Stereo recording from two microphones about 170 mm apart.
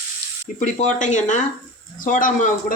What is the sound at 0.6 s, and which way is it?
Speech, 45° left (ahead or behind).